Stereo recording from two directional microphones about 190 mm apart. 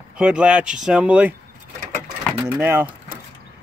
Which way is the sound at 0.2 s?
5° right (ahead or behind).